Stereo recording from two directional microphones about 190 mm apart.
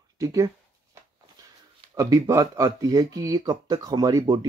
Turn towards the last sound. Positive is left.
turn(degrees=-20)  # may be behind; listen again after turning